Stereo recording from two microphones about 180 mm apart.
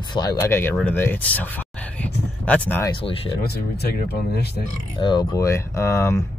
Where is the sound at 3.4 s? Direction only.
60° left (ahead or behind).